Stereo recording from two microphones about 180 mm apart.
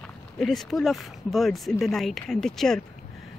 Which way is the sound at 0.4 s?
Centre (ahead or behind).